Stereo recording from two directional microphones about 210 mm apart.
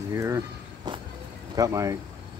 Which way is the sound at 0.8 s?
20° right (ahead or behind).